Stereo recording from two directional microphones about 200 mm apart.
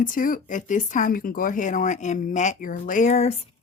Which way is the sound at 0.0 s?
40° left (ahead or behind).